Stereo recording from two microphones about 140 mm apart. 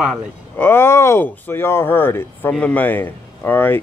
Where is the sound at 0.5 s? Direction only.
15° left (ahead or behind).